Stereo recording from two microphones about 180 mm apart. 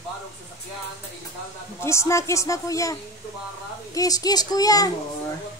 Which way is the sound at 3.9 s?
20° left (ahead or behind).